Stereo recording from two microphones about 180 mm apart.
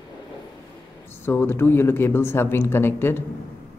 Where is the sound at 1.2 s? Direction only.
10° left (ahead or behind).